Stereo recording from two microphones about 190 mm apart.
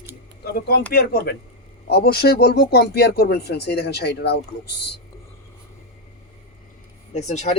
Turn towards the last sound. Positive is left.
turn(degrees=35)  # may be behind; listen again after turning